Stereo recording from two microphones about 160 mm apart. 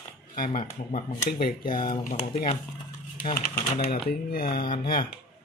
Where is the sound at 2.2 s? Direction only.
40° left (ahead or behind).